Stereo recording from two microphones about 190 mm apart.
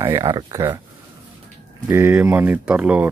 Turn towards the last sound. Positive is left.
turn(degrees=-5)  # may be behind; listen again after turning